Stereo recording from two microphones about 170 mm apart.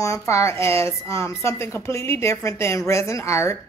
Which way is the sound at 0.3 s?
15° left (ahead or behind).